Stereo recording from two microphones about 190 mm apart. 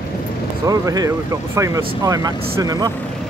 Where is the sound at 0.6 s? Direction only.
20° right (ahead or behind).